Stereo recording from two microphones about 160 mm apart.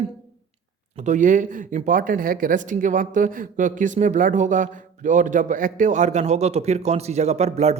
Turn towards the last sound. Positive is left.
turn(degrees=-45)  # may be behind; listen again after turning